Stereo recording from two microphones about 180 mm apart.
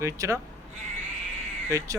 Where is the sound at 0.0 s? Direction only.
15° right (ahead or behind).